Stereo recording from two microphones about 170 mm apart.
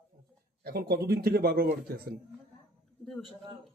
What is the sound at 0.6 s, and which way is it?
Speech, 65° right (ahead or behind).